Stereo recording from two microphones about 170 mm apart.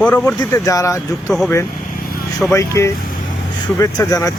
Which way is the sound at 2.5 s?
15° left (ahead or behind).